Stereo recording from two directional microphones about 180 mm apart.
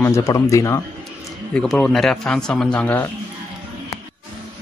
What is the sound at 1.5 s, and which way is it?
Speech, 5° left (ahead or behind).